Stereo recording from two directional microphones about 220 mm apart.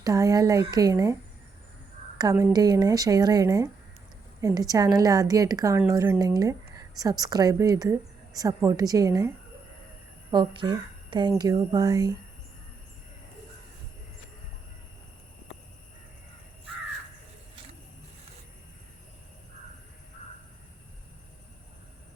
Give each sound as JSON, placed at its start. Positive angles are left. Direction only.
{"t": 0.0, "sound": "a woman's voice", "side_deg": -15}
{"t": 2.1, "sound": "a woman's voice", "side_deg": -15}
{"t": 10.3, "sound": "speech", "side_deg": -20}